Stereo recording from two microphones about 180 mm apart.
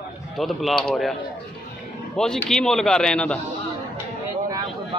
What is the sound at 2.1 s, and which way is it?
Speech, 5° left (ahead or behind).